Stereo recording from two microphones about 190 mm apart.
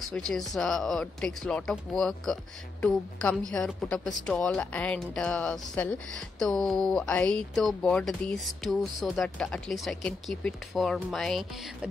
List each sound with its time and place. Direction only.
0.3 s speech: centre (ahead or behind)